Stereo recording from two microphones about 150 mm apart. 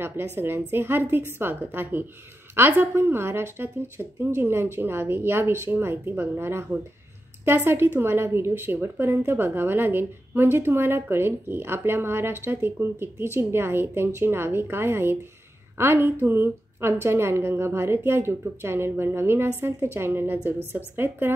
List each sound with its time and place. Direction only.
0.4 s a woman's voice: 15° right (ahead or behind)